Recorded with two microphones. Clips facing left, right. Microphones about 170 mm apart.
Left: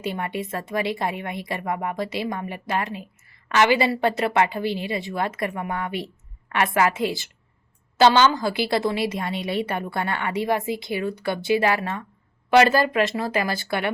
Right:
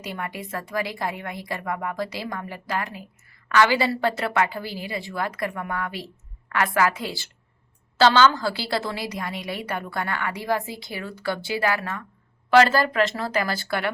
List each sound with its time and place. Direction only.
0.0 s a woman's voice: 25° left (ahead or behind)